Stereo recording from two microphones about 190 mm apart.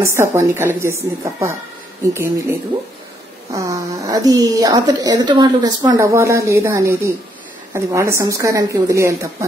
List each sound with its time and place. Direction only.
0.0 s a woman's voice: 15° right (ahead or behind)
3.5 s a woman's voice: 15° right (ahead or behind)